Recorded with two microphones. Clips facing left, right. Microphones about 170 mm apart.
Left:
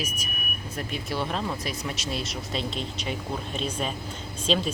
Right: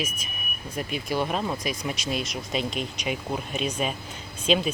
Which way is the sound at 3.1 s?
10° right (ahead or behind).